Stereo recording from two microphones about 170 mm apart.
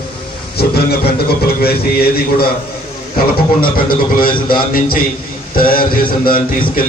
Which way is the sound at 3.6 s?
55° left (ahead or behind).